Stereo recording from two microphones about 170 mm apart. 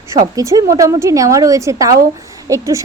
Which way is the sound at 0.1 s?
20° right (ahead or behind).